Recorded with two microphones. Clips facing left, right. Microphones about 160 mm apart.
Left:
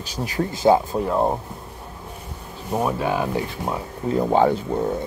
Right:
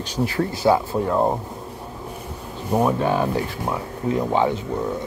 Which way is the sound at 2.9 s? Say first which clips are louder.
Even; 5° left (ahead or behind).